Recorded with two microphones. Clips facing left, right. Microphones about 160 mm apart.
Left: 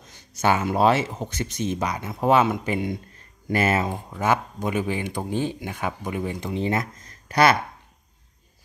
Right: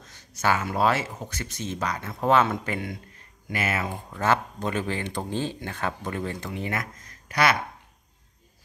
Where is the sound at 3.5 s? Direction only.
35° left (ahead or behind).